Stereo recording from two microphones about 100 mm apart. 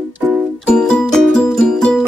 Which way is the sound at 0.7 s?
5° left (ahead or behind).